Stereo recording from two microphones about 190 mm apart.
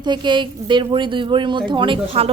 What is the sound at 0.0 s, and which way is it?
A woman's voice, 25° right (ahead or behind).